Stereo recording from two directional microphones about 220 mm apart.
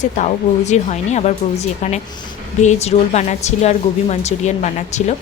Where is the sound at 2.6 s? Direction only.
30° left (ahead or behind).